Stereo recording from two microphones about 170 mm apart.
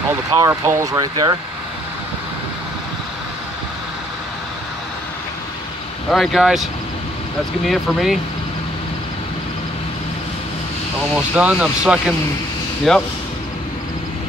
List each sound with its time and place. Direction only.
0.3 s speech: 20° right (ahead or behind)
6.0 s speech: centre (ahead or behind)
11.1 s speech: 5° right (ahead or behind)